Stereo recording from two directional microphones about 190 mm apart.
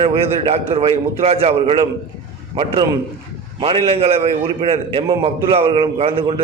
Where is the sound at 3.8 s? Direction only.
30° right (ahead or behind).